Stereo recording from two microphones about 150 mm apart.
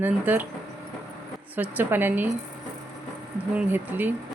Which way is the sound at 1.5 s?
10° right (ahead or behind).